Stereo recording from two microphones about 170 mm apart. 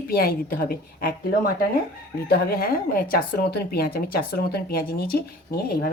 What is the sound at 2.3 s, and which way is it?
Speech, 65° left (ahead or behind).